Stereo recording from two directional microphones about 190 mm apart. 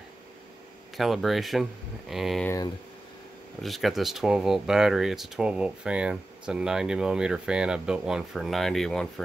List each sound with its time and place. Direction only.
0.9 s speech: centre (ahead or behind)
2.4 s speech: 15° left (ahead or behind)
3.6 s speech: centre (ahead or behind)